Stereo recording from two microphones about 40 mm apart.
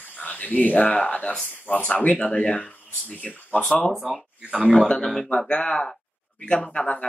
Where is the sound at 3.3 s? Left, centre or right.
Left.